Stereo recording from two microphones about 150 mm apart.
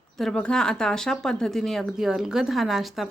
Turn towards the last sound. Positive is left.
turn(degrees=0)  # may be behind; listen again after turning